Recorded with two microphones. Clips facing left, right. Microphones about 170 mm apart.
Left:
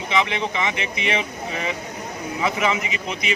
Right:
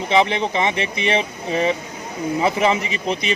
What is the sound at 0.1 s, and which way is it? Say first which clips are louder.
A man's voice: right 5 dB; 35° right (ahead or behind).